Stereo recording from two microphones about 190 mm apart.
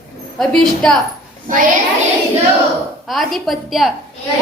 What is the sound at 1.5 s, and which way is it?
Speech, 45° right (ahead or behind).